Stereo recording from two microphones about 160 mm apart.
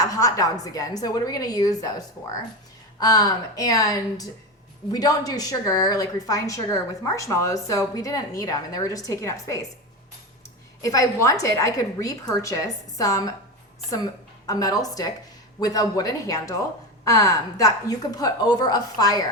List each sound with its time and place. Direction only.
0.0 s a woman's voice: 20° left (ahead or behind)
10.8 s a woman's voice: 20° left (ahead or behind)